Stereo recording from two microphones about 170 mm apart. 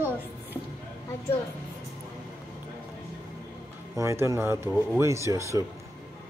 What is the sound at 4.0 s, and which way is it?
Speech, 15° right (ahead or behind).